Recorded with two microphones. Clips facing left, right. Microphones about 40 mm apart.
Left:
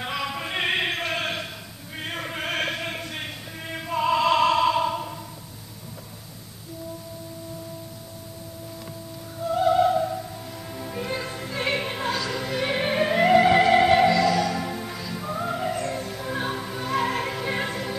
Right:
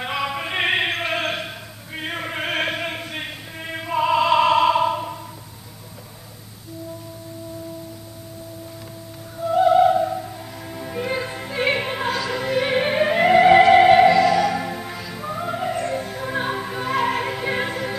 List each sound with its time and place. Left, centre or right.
0.0 s music: centre
2.0 s a sound: centre
9.5 s music: centre